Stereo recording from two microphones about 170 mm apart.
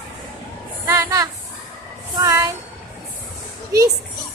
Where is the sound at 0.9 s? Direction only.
20° right (ahead or behind).